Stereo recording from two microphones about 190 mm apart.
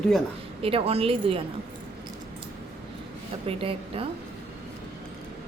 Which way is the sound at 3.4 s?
30° right (ahead or behind).